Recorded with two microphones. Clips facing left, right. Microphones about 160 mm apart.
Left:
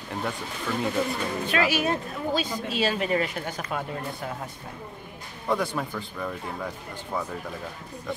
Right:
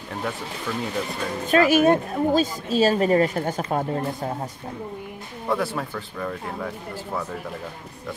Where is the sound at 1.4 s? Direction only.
45° right (ahead or behind).